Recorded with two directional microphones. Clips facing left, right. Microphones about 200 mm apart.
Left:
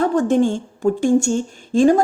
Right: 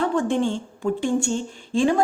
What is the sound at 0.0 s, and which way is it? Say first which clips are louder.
A woman's voice: left 5 dB; 40° left (ahead or behind).